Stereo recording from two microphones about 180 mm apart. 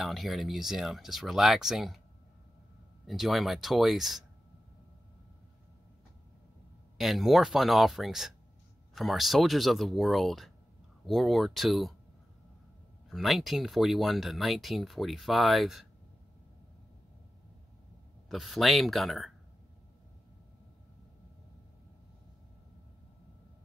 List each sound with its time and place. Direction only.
0.0 s speech: centre (ahead or behind)
3.1 s speech: centre (ahead or behind)
7.0 s speech: centre (ahead or behind)
13.1 s speech: centre (ahead or behind)
18.3 s speech: centre (ahead or behind)